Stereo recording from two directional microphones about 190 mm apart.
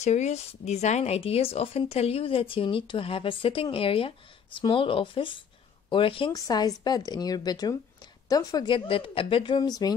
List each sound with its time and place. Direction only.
0.0 s speech: 35° left (ahead or behind); by 9.9 s 20° left (ahead or behind)